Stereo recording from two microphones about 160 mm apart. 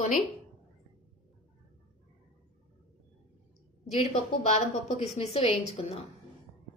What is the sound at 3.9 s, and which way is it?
Speech, 50° left (ahead or behind).